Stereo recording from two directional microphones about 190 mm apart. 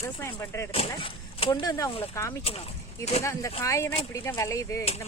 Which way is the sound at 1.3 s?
25° left (ahead or behind).